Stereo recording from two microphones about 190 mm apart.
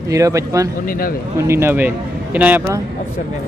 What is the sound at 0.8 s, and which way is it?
Speech, 50° left (ahead or behind).